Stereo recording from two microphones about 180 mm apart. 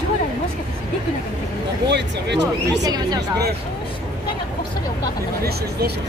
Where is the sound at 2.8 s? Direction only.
20° right (ahead or behind).